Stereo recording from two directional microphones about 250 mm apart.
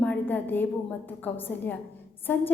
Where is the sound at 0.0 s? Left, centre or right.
Centre.